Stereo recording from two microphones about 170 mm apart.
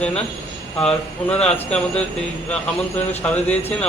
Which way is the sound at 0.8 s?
5° left (ahead or behind).